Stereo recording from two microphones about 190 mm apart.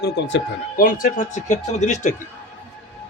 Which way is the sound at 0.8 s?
45° left (ahead or behind).